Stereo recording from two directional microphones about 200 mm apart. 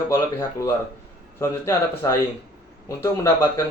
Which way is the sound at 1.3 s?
15° left (ahead or behind).